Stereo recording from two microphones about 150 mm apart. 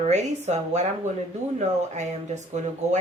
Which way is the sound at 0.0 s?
50° right (ahead or behind).